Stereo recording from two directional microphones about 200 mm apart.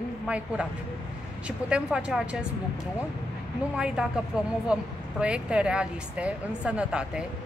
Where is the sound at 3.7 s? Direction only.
5° right (ahead or behind).